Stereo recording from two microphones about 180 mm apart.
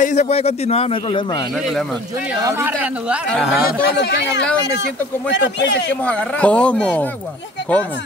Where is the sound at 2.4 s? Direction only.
15° right (ahead or behind).